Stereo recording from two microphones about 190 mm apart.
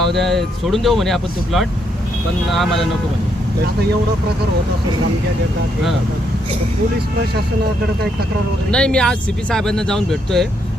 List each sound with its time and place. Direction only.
0.0 s speech: centre (ahead or behind)
8.7 s speech: 5° left (ahead or behind)